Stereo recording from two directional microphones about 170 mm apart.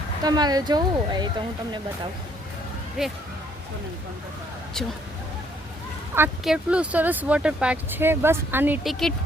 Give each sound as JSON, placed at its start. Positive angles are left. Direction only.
{"t": 0.2, "sound": "speech", "side_deg": -25}
{"t": 3.0, "sound": "speech", "side_deg": -5}
{"t": 6.4, "sound": "speech", "side_deg": -5}